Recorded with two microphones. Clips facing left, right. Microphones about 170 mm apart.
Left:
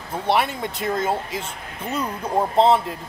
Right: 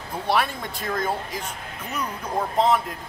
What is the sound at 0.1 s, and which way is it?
Speech, 20° left (ahead or behind).